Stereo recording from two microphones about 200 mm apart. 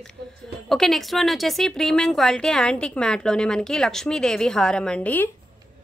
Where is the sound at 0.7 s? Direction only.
Centre (ahead or behind).